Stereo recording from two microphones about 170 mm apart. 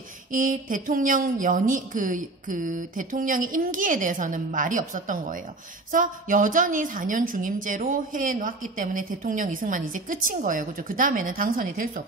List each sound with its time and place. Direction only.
0.3 s a woman's voice: 50° right (ahead or behind)